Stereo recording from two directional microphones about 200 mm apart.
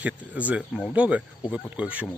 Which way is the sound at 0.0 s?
5° right (ahead or behind).